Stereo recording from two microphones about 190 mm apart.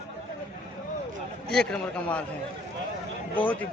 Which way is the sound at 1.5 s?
5° left (ahead or behind).